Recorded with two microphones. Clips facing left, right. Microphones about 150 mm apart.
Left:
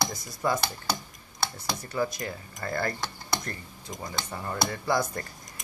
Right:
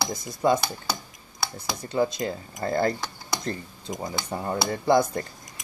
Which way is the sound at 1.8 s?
25° right (ahead or behind).